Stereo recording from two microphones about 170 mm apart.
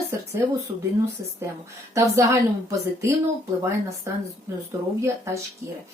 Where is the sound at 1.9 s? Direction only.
20° right (ahead or behind).